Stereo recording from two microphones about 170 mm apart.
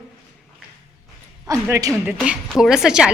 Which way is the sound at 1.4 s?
20° right (ahead or behind).